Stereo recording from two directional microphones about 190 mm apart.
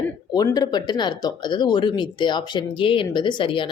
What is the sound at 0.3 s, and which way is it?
Speech, 20° left (ahead or behind).